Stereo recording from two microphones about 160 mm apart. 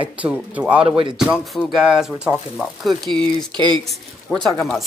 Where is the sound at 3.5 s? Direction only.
30° right (ahead or behind).